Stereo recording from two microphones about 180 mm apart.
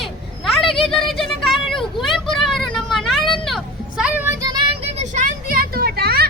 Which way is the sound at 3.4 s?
Centre (ahead or behind).